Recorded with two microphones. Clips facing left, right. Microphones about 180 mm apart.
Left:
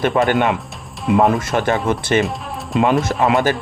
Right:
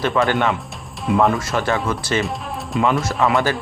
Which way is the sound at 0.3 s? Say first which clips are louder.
Left 3 dB; 20° left (ahead or behind).